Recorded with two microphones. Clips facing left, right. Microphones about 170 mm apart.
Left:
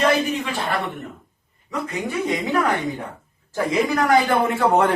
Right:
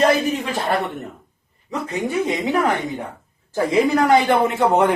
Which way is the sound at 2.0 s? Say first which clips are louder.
Right 3 dB; 20° right (ahead or behind).